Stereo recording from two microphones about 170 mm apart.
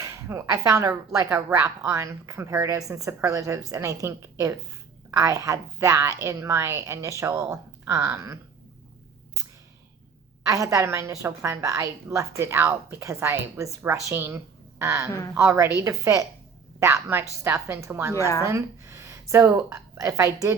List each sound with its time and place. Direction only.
0.0 s a woman's voice: 15° right (ahead or behind)
10.4 s a woman's voice: 20° right (ahead or behind)
18.1 s speech: 15° left (ahead or behind)
18.4 s speech: 15° right (ahead or behind)